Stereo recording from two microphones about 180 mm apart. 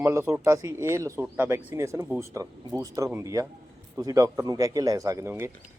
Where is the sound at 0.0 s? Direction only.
15° right (ahead or behind).